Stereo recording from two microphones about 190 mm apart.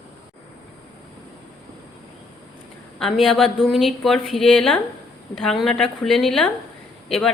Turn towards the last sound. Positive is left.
turn(degrees=0)  # may be behind; listen again after turning